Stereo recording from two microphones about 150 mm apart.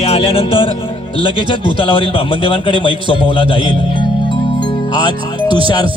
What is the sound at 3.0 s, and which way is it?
Music, 35° left (ahead or behind).